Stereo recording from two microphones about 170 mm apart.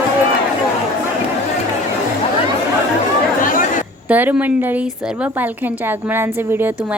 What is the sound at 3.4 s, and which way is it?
Chatter, 55° left (ahead or behind).